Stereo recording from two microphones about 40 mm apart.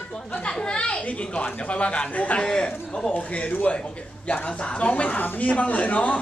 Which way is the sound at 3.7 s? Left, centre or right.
Left.